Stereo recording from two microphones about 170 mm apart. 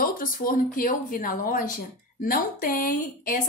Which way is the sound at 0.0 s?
55° left (ahead or behind).